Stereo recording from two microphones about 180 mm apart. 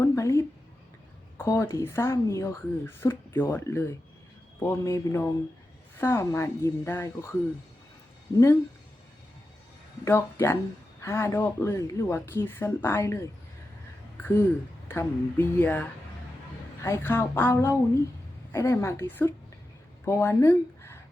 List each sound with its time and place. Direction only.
0.0 s a sound: 15° left (ahead or behind)
1.4 s speech: 15° left (ahead or behind)
10.0 s speech: 15° left (ahead or behind)